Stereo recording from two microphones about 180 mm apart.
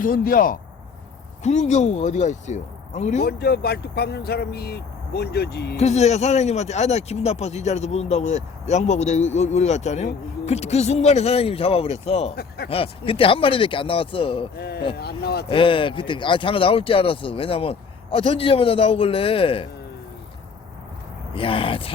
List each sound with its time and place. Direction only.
0.0 s speech: 50° left (ahead or behind)
1.5 s speech: 40° left (ahead or behind)
3.2 s speech: 60° left (ahead or behind)
5.7 s speech: 40° left (ahead or behind)
14.6 s speech: 65° left (ahead or behind)
15.4 s speech: 30° left (ahead or behind)
21.3 s speech: 30° left (ahead or behind)